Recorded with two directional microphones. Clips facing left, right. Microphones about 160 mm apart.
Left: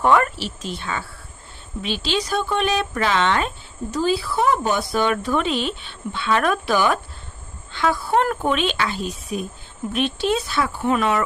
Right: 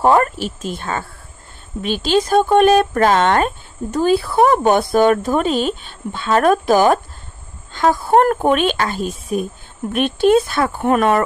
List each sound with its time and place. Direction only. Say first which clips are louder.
0.0 s speech: right 4 dB; 40° right (ahead or behind)